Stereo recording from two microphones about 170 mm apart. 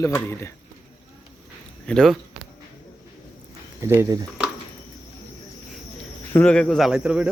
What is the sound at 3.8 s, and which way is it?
Speech, 15° right (ahead or behind).